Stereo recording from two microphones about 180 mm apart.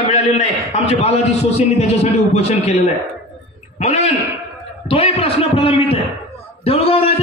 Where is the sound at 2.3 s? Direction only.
35° left (ahead or behind).